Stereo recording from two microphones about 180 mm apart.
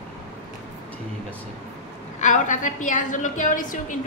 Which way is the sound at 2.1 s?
40° left (ahead or behind).